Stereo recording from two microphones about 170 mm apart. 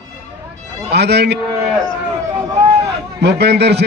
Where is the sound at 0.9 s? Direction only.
75° right (ahead or behind).